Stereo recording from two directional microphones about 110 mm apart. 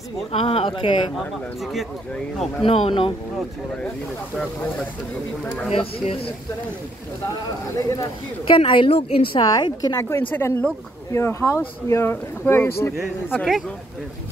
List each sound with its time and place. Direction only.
0.3 s speech: 60° left (ahead or behind)
2.6 s speech: 65° left (ahead or behind)
5.7 s speech: 60° left (ahead or behind)
8.5 s a woman's voice: 50° left (ahead or behind); by 12.9 s 25° left (ahead or behind)